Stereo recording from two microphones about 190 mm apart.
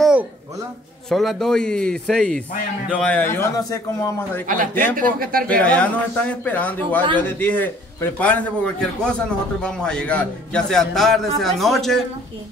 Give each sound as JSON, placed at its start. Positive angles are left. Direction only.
{"t": 0.0, "sound": "a sound", "side_deg": -5}
{"t": 1.0, "sound": "a man's voice", "side_deg": 0}
{"t": 4.5, "sound": "speech", "side_deg": -45}
{"t": 5.6, "sound": "a man's voice", "side_deg": 5}